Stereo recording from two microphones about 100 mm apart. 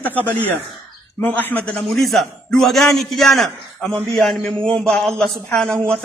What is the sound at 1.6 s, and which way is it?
A man's voice, 5° left (ahead or behind).